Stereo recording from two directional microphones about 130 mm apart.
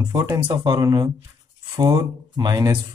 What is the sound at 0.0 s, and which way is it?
Speech, 30° right (ahead or behind).